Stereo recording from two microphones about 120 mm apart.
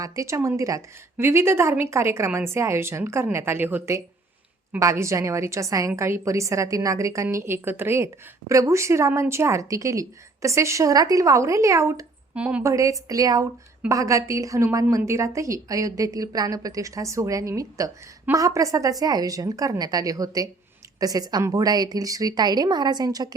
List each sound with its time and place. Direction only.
0.0 s a woman's voice: 25° right (ahead or behind)
12.3 s speech: 10° right (ahead or behind)
12.6 s a woman's voice: 25° right (ahead or behind)